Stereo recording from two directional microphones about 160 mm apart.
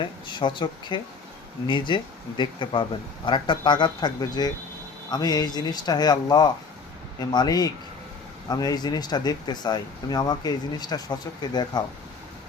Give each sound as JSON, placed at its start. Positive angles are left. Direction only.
{"t": 0.0, "sound": "speech", "side_deg": 30}